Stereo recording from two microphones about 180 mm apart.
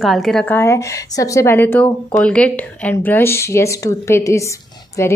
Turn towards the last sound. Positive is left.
turn(degrees=15)  # may be behind; listen again after turning